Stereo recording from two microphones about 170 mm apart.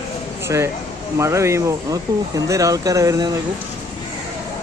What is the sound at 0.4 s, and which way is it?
Speech, 15° right (ahead or behind).